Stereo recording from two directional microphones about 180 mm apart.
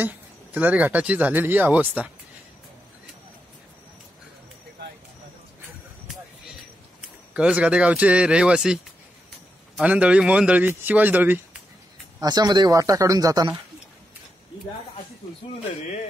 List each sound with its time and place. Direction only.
0.0 s speech: 10° right (ahead or behind)
7.3 s speech: 5° right (ahead or behind)
9.8 s speech: 5° right (ahead or behind)
12.2 s speech: 20° right (ahead or behind)